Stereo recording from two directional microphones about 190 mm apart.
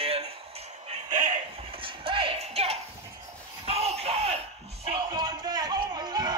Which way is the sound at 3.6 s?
35° right (ahead or behind).